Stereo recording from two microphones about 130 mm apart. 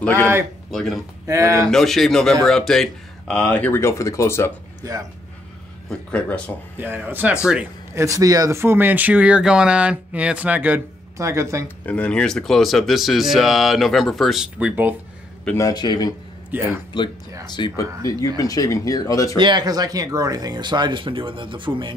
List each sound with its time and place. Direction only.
0.0 s speech: 10° left (ahead or behind)
0.7 s speech: centre (ahead or behind)
1.2 s speech: 25° right (ahead or behind)
1.7 s speech: centre (ahead or behind); by 4.5 s 20° left (ahead or behind)
5.9 s speech: 10° left (ahead or behind)
6.8 s speech: 15° right (ahead or behind)
11.1 s speech: 25° right (ahead or behind)
11.6 s speech: 10° left (ahead or behind); by 15.0 s 10° right (ahead or behind)
15.5 s speech: 30° left (ahead or behind)
16.4 s a man's voice: 15° right (ahead or behind)
17.5 s speech: 35° left (ahead or behind)
19.3 s speech: 35° right (ahead or behind)